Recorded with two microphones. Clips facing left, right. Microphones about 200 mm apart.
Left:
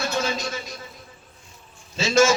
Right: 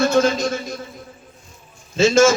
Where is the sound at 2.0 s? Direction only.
50° right (ahead or behind).